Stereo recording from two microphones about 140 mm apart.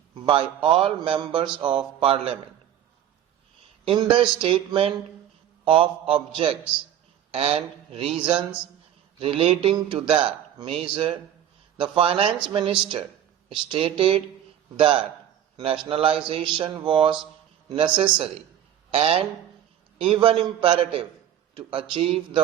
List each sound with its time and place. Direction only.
0.1 s speech: 35° right (ahead or behind)
3.8 s speech: 35° right (ahead or behind)